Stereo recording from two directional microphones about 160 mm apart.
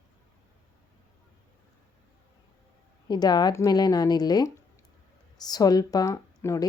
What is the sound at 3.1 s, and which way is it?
Speech, 25° left (ahead or behind).